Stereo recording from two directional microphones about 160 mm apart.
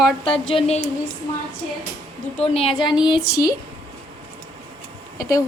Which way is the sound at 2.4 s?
40° left (ahead or behind).